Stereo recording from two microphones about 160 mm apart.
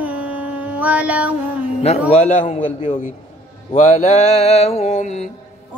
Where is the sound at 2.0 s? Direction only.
45° left (ahead or behind).